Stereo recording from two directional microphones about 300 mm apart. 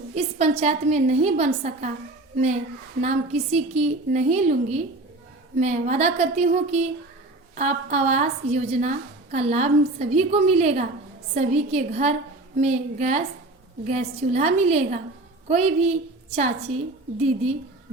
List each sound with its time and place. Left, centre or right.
0.1 s a woman's voice: right
3.0 s a woman's voice: right